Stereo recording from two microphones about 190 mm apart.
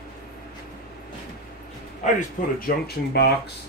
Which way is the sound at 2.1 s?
55° left (ahead or behind).